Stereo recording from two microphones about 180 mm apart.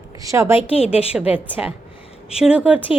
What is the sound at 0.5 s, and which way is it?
Speech, 35° left (ahead or behind).